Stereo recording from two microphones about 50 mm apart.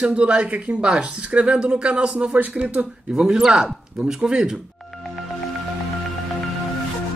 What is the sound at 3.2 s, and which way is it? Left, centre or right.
Speech, centre.